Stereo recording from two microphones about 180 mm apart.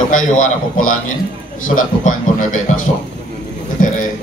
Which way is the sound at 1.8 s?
45° left (ahead or behind).